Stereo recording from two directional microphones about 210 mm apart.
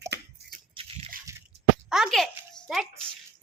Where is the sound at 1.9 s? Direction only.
Centre (ahead or behind).